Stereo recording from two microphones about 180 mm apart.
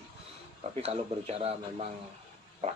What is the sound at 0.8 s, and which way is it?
Speech, 35° right (ahead or behind).